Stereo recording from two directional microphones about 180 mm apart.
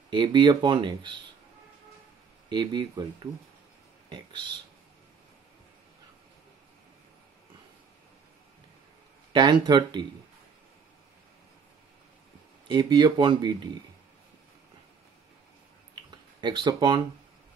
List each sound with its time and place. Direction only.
0.1 s speech: 25° right (ahead or behind)
2.5 s speech: 25° right (ahead or behind)
4.1 s speech: 25° right (ahead or behind)
9.3 s speech: 25° right (ahead or behind)
12.6 s speech: 25° right (ahead or behind)
16.3 s speech: 25° right (ahead or behind)